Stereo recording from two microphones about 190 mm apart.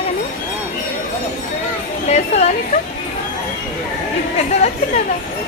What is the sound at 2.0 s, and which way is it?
Speech, 35° left (ahead or behind).